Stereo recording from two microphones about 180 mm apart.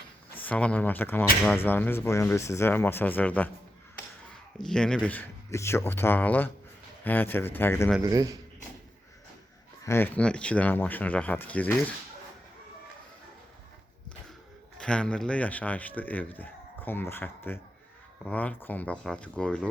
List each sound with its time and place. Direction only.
0.4 s speech: 5° left (ahead or behind)
4.6 s speech: 5° left (ahead or behind)
8.0 s speech: 20° right (ahead or behind)
9.8 s speech: 15° left (ahead or behind)
14.8 s speech: 5° left (ahead or behind)